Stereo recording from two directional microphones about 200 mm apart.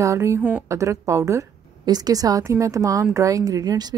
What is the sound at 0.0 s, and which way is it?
A woman's voice, 15° right (ahead or behind).